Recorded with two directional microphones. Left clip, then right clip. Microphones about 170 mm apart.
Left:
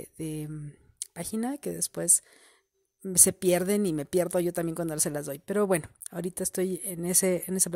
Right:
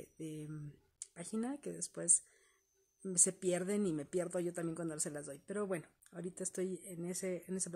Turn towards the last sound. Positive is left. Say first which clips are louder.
# left 13 dB
turn(degrees=55)  # may be behind; listen again after turning